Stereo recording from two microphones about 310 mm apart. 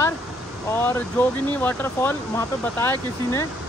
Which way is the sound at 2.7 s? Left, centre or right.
Centre.